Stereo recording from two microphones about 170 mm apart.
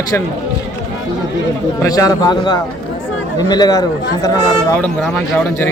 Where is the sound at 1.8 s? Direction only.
20° left (ahead or behind).